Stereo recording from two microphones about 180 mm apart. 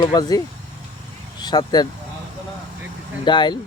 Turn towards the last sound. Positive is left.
turn(degrees=25)  # may be behind; listen again after turning